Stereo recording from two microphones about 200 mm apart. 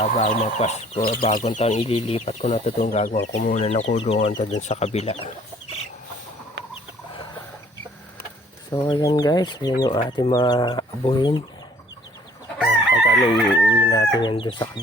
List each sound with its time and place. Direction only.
0.0 s speech: 35° left (ahead or behind)
6.6 s rodents: 60° right (ahead or behind)
8.7 s speech: 20° left (ahead or behind)
12.5 s chicken: 5° right (ahead or behind)
13.1 s crowing: centre (ahead or behind)
13.9 s speech: 20° left (ahead or behind)